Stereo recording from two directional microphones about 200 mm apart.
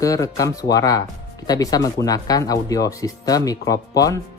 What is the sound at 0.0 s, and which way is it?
Speech, 15° left (ahead or behind).